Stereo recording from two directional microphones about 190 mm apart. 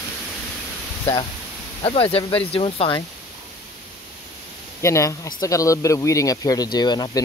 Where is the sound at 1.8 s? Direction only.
30° left (ahead or behind).